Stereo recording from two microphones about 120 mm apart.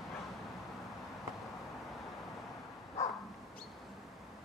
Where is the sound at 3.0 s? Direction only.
25° left (ahead or behind).